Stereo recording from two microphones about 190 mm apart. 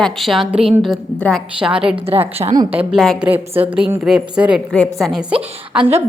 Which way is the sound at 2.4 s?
25° right (ahead or behind).